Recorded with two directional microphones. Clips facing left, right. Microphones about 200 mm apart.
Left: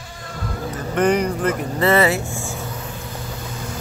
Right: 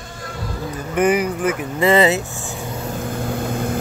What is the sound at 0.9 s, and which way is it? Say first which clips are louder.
Speech: right 1 dB; 5° right (ahead or behind).